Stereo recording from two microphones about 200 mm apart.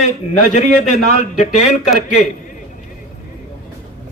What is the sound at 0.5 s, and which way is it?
Speech, 35° left (ahead or behind).